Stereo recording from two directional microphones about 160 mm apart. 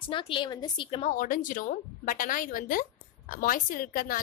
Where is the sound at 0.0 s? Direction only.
35° left (ahead or behind).